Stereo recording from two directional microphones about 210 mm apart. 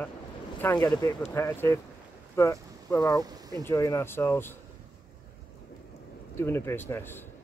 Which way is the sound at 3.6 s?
15° left (ahead or behind).